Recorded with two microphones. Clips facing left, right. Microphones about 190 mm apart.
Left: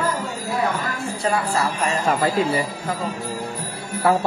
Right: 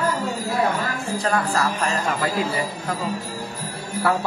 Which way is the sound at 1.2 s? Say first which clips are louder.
Left 1 dB; 5° left (ahead or behind).